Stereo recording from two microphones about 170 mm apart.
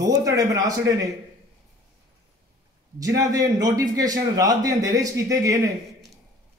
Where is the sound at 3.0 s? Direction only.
20° right (ahead or behind).